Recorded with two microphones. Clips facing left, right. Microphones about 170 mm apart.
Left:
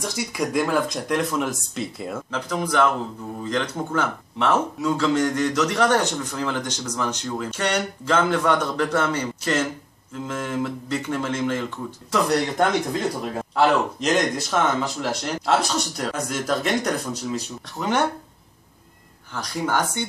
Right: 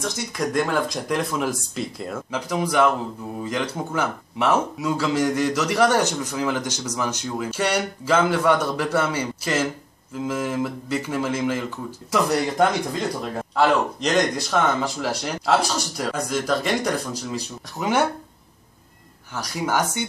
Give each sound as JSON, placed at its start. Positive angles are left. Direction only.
{"t": 0.1, "sound": "speech", "side_deg": 5}
{"t": 2.3, "sound": "speech", "side_deg": -10}
{"t": 19.3, "sound": "speech", "side_deg": -5}